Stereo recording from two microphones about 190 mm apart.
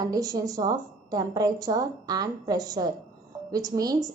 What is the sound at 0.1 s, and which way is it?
Speech, 20° right (ahead or behind).